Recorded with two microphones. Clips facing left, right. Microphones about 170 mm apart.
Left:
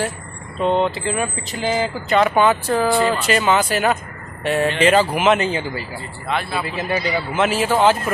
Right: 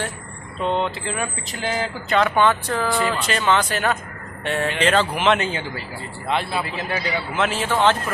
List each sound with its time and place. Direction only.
0.6 s speech: 5° left (ahead or behind); by 3.2 s 20° left (ahead or behind)
3.2 s speech: 5° left (ahead or behind)
6.2 s speech: 25° right (ahead or behind)
6.6 s speech: centre (ahead or behind)